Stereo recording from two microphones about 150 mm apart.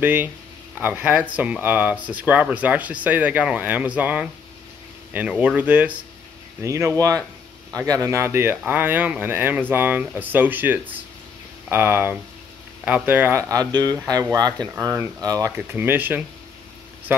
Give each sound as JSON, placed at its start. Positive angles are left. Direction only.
{"t": 0.0, "sound": "speech", "side_deg": -10}
{"t": 15.5, "sound": "speech", "side_deg": -15}